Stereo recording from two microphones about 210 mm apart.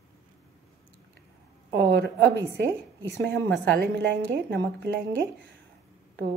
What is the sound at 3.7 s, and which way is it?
A woman's voice, 55° right (ahead or behind).